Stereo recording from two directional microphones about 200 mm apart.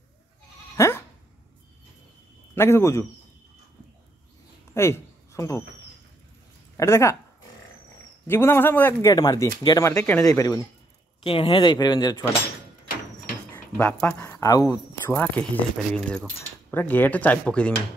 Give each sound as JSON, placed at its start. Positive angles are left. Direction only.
{"t": 0.7, "sound": "bleat", "side_deg": 15}
{"t": 2.5, "sound": "speech", "side_deg": 10}
{"t": 4.7, "sound": "a sound", "side_deg": 15}
{"t": 6.8, "sound": "speech", "side_deg": 15}
{"t": 8.3, "sound": "speech", "side_deg": 10}
{"t": 13.5, "sound": "speech", "side_deg": 5}